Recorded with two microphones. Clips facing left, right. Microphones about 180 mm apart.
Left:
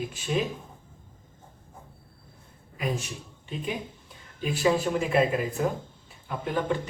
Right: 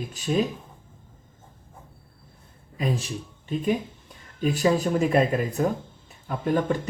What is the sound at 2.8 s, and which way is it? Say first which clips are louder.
Speech: right 3 dB; 30° right (ahead or behind).